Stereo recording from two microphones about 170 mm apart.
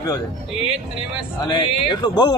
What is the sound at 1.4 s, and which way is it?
Speech, 25° left (ahead or behind).